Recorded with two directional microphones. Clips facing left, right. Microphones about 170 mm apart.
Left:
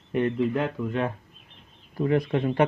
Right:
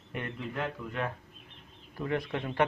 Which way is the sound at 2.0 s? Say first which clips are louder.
Left 9 dB; 30° left (ahead or behind).